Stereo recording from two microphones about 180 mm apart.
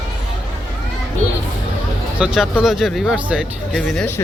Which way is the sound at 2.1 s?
5° right (ahead or behind).